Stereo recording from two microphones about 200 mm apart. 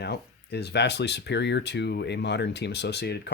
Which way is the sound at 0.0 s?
55° left (ahead or behind).